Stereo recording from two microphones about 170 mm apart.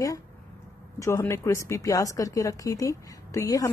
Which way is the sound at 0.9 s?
15° left (ahead or behind).